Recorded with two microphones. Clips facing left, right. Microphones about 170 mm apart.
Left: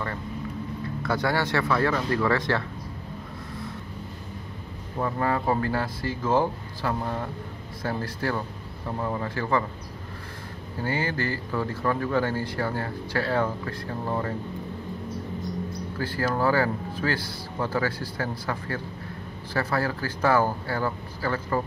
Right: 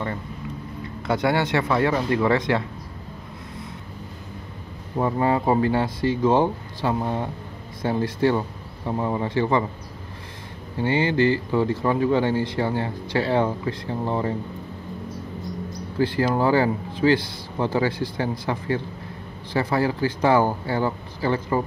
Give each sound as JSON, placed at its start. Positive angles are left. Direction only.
{"t": 1.0, "sound": "speech", "side_deg": -20}
{"t": 4.9, "sound": "speech", "side_deg": -20}
{"t": 10.8, "sound": "speech", "side_deg": -25}
{"t": 16.0, "sound": "speech", "side_deg": -25}